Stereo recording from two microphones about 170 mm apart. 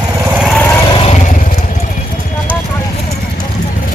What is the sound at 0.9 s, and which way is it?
Vehicle, 35° left (ahead or behind).